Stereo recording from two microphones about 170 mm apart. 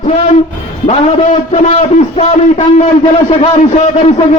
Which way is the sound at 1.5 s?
40° left (ahead or behind).